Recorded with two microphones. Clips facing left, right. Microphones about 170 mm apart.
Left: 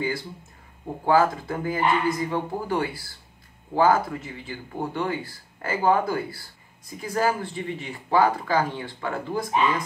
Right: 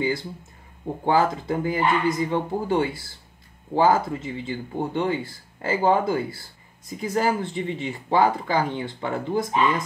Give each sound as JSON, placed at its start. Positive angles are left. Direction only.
{"t": 1.0, "sound": "speech", "side_deg": -20}